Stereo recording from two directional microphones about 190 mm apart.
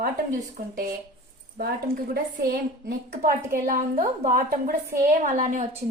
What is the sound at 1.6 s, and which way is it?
A woman's voice, 55° right (ahead or behind).